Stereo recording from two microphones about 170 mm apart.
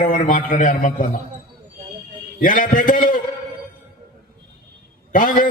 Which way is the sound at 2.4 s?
50° left (ahead or behind).